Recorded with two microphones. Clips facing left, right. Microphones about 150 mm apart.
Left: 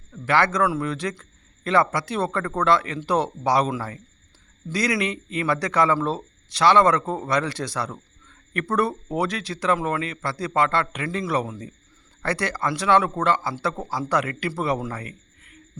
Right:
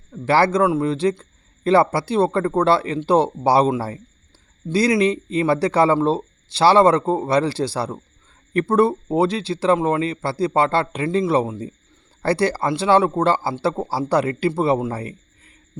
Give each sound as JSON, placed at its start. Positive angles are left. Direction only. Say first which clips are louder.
{"t": 0.1, "sound": "speech", "louder": "right 5 dB", "side_deg": -30}